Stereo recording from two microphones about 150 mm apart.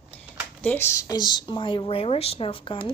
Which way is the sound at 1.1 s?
30° left (ahead or behind).